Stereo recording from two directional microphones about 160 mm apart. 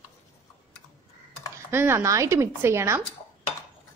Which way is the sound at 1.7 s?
15° right (ahead or behind).